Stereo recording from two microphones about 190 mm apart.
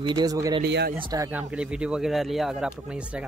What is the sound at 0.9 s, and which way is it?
Speech, 20° right (ahead or behind).